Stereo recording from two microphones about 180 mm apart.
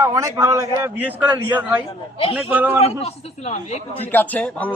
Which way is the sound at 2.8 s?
35° left (ahead or behind).